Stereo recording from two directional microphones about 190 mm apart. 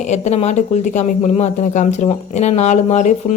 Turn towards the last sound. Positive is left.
turn(degrees=40)  # may be behind; listen again after turning